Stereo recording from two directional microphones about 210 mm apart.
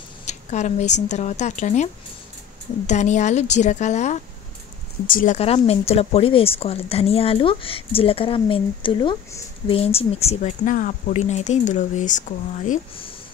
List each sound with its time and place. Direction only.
0.2 s speech: 35° left (ahead or behind)
2.9 s speech: 35° left (ahead or behind)